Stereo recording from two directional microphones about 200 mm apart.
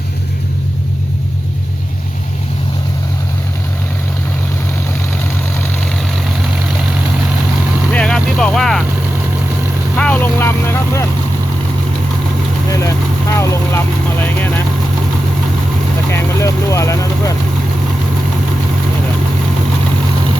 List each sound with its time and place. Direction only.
7.9 s vehicle: 5° left (ahead or behind)
10.0 s vehicle: 10° left (ahead or behind)
12.7 s vehicle: 15° left (ahead or behind)
16.1 s vehicle: 15° left (ahead or behind)